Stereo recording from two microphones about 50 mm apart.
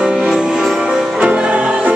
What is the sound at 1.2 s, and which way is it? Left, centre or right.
Music, right.